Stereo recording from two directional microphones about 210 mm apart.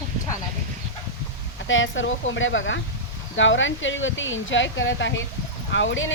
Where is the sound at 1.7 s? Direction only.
65° left (ahead or behind).